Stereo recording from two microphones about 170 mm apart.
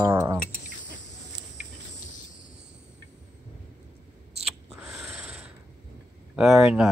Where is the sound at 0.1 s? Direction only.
15° right (ahead or behind).